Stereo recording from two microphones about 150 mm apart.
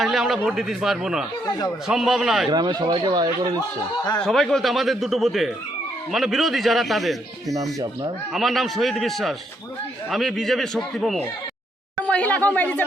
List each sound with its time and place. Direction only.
0.0 s a man's voice: centre (ahead or behind)
1.5 s speech: 25° left (ahead or behind)
1.9 s a man's voice: centre (ahead or behind)
2.5 s speech: 30° right (ahead or behind)
4.2 s a man's voice: centre (ahead or behind)
7.5 s speech: 25° right (ahead or behind)
8.3 s a man's voice: centre (ahead or behind)